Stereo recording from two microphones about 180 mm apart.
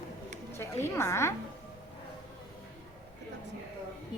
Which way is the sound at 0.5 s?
15° left (ahead or behind).